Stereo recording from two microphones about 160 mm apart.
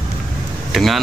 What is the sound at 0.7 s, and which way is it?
Speech, centre (ahead or behind).